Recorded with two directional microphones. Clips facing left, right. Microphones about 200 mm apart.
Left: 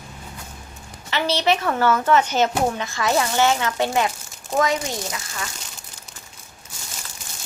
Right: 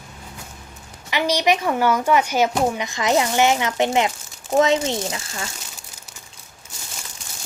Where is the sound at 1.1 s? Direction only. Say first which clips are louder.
Right 1 dB; 15° right (ahead or behind).